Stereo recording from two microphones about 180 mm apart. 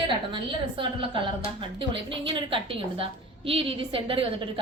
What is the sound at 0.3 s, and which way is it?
A woman's voice, 25° right (ahead or behind).